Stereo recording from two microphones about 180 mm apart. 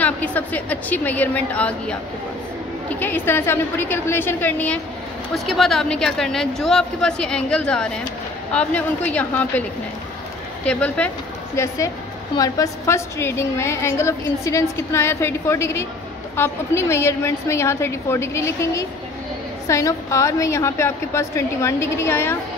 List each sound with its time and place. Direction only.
0.0 s a woman's voice: 10° left (ahead or behind)
3.0 s a woman's voice: 10° left (ahead or behind)